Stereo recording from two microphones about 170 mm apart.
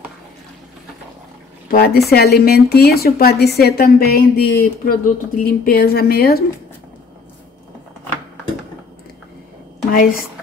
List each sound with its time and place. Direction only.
1.7 s speech: 65° left (ahead or behind)
9.9 s speech: 60° left (ahead or behind)